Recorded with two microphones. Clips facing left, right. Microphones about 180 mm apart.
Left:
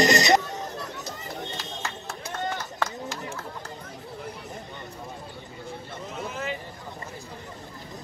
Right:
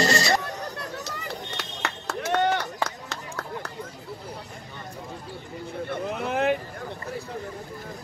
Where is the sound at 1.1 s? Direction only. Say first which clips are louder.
Right 1 dB; 70° right (ahead or behind).